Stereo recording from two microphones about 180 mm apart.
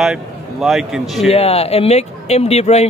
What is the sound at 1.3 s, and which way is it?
Speech, 35° left (ahead or behind).